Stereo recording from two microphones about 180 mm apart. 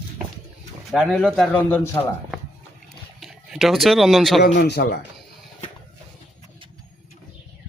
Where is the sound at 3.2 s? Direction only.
Centre (ahead or behind).